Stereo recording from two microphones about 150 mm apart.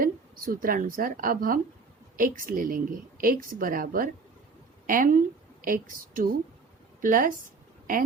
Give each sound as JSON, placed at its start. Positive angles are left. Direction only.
{"t": 0.0, "sound": "a woman's voice", "side_deg": -70}